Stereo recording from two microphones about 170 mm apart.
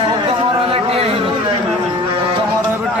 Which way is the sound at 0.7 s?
35° right (ahead or behind).